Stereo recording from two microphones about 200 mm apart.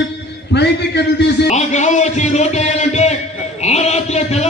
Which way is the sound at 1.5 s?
35° left (ahead or behind).